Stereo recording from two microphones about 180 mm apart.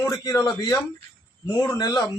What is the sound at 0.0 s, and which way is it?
A man's voice, 15° left (ahead or behind).